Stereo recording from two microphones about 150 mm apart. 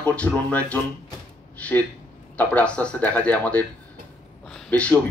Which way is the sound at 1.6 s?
10° left (ahead or behind).